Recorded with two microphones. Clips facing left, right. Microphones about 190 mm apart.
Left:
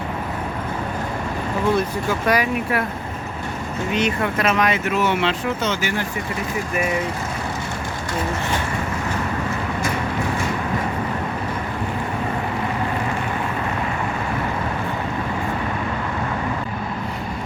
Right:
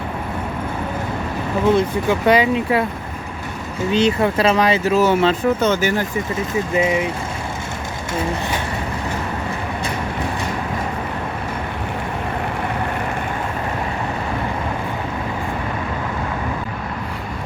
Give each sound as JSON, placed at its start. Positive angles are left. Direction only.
{"t": 1.7, "sound": "speech", "side_deg": -25}
{"t": 3.9, "sound": "speech", "side_deg": -30}
{"t": 6.7, "sound": "speech", "side_deg": -20}